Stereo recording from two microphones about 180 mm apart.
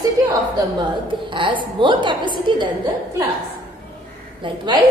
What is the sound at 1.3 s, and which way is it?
A woman's voice, 25° right (ahead or behind).